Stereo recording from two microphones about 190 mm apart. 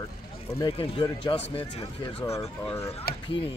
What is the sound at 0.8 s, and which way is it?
Speech, 25° left (ahead or behind).